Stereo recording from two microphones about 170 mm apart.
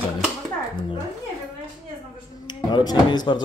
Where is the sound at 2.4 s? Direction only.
25° left (ahead or behind).